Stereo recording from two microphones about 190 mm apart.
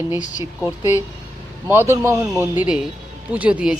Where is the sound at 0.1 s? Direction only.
20° left (ahead or behind).